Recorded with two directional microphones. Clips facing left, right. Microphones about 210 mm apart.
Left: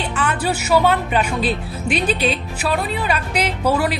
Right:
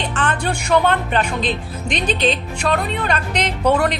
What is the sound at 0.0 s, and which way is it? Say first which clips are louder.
Speech: even; 10° left (ahead or behind).